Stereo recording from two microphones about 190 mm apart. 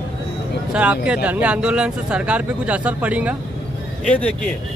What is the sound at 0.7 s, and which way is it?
Speech, 5° right (ahead or behind).